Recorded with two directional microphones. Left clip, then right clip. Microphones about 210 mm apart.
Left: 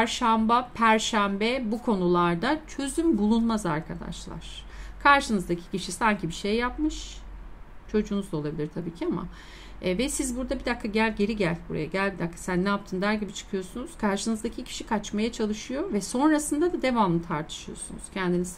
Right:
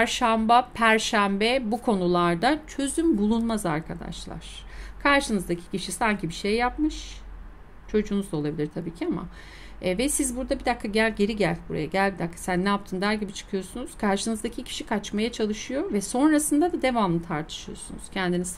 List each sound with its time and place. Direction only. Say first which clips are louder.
0.0 s a woman's voice: right 1 dB; 20° right (ahead or behind)